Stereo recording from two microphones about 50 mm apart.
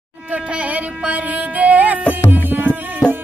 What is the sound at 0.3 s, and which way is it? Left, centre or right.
Music, right.